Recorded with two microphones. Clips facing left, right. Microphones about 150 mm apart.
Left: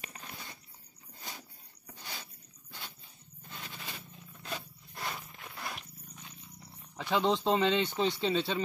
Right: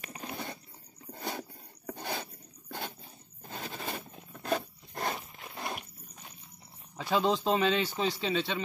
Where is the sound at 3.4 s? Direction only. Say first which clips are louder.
Right 7 dB; 40° right (ahead or behind).